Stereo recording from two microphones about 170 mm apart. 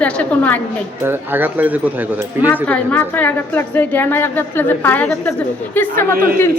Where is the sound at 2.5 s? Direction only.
10° left (ahead or behind).